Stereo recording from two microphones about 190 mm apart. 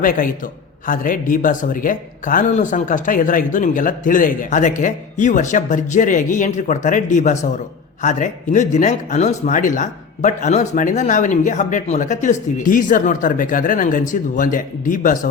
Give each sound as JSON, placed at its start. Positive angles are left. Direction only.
{"t": 0.9, "sound": "speech", "side_deg": 45}